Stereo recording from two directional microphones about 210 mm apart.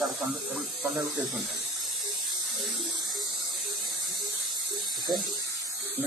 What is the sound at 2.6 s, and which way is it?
Speech, centre (ahead or behind).